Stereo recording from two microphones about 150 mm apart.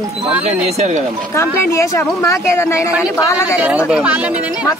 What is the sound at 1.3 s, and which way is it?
Speech, 20° left (ahead or behind).